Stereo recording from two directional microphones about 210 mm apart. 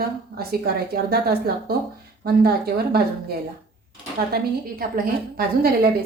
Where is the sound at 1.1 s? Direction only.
50° right (ahead or behind).